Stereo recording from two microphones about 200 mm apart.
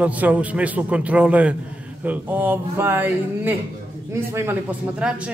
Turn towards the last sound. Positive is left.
turn(degrees=-5)  # may be behind; listen again after turning